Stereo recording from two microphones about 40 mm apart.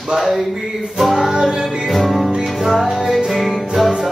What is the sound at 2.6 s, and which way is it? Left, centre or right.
Music, centre.